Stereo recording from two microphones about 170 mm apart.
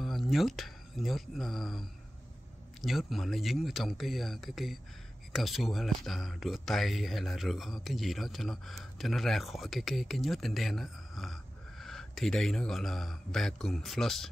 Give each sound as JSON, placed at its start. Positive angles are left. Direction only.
{"t": 0.0, "sound": "speech", "side_deg": 0}